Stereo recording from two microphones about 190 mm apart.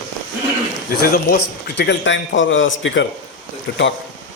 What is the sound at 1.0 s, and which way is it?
A man's voice, 50° left (ahead or behind).